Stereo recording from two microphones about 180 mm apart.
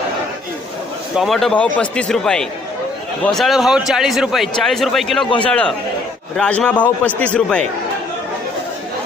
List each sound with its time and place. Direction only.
1.1 s a man's voice: centre (ahead or behind)